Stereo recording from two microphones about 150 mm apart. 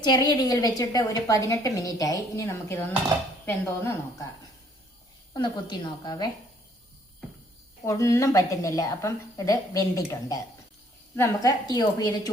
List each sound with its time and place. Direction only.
0.0 s a woman's voice: 30° left (ahead or behind)
5.3 s a woman's voice: 30° left (ahead or behind)
7.9 s a woman's voice: 20° left (ahead or behind)